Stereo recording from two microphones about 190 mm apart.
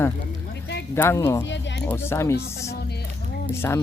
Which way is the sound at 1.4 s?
70° left (ahead or behind).